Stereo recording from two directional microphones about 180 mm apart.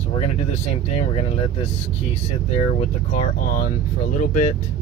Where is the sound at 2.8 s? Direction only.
45° left (ahead or behind).